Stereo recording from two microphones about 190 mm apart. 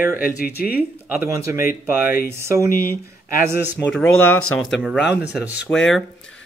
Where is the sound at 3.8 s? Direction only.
90° left.